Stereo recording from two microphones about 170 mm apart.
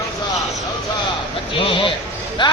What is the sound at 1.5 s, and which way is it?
Music, 30° left (ahead or behind).